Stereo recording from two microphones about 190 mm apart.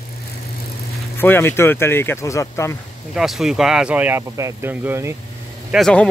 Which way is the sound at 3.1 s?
Centre (ahead or behind).